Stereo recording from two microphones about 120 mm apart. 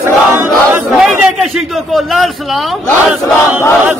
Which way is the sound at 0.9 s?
Centre (ahead or behind).